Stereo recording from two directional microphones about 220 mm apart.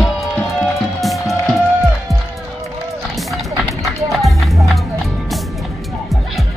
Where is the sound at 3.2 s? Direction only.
Centre (ahead or behind).